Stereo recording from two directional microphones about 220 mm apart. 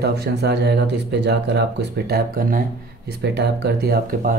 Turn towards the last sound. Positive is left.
turn(degrees=-40)  # may be behind; listen again after turning